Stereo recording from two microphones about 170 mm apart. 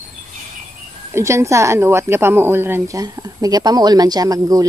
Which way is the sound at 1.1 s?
15° right (ahead or behind).